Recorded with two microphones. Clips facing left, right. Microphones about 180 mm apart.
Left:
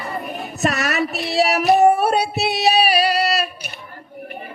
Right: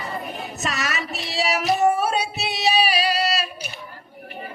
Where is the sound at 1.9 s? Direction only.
60° left (ahead or behind).